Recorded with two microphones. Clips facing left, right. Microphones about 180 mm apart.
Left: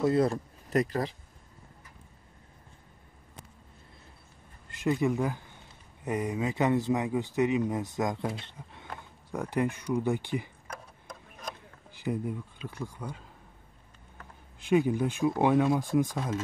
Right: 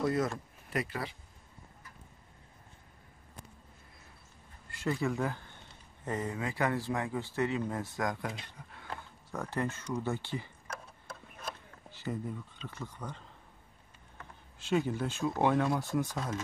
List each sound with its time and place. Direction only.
0.0 s speech: 30° left (ahead or behind)
4.6 s speech: 20° left (ahead or behind)
11.1 s a sound: 15° left (ahead or behind)
14.6 s speech: 15° left (ahead or behind)